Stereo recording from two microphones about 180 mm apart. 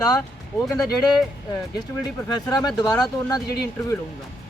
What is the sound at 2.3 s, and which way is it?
Speech, 20° left (ahead or behind).